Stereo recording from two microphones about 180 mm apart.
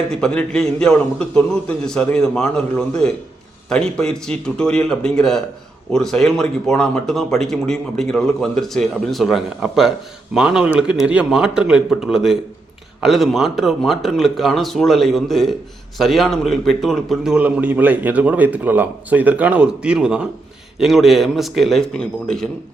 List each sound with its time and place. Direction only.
0.1 s a man's voice: 5° left (ahead or behind)